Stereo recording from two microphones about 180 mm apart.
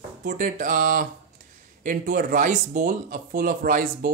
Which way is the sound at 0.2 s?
50° right (ahead or behind).